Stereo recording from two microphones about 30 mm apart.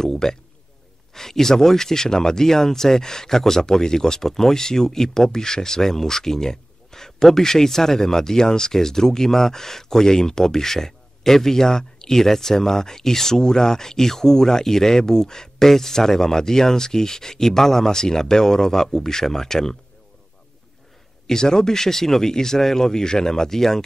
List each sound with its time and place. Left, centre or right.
0.0 s speech: centre
21.3 s speech: centre